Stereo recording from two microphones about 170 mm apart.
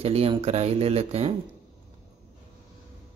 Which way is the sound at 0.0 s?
35° right (ahead or behind).